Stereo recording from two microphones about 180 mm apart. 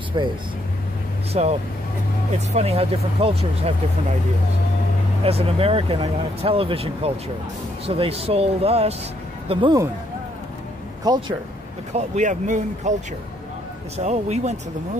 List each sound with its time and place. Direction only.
0.2 s speech: 25° right (ahead or behind)
1.3 s speech: 35° right (ahead or behind)
5.2 s speech: 35° right (ahead or behind)
11.1 s speech: 25° right (ahead or behind)
11.9 s speech: 40° right (ahead or behind)
13.9 s speech: 35° right (ahead or behind)